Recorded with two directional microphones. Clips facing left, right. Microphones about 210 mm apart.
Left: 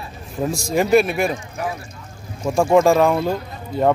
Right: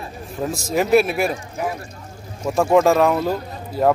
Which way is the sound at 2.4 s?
5° right (ahead or behind).